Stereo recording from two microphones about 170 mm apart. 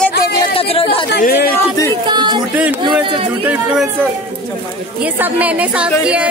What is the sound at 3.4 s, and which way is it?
Speech, 5° right (ahead or behind).